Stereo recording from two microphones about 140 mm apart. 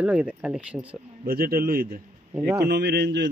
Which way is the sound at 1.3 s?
90° right.